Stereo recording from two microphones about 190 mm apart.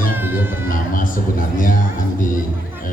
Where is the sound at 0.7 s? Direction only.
45° left (ahead or behind).